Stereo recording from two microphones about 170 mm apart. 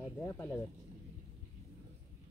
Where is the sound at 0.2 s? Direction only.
15° left (ahead or behind).